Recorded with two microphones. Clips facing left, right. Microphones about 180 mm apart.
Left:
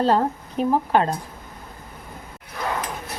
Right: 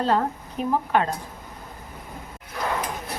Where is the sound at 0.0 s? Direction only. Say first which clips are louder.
Left 3 dB; 30° left (ahead or behind).